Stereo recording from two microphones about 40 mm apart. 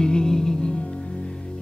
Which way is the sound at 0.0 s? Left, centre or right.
Centre.